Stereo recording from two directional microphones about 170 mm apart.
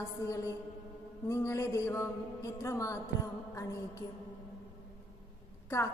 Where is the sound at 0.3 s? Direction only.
15° left (ahead or behind).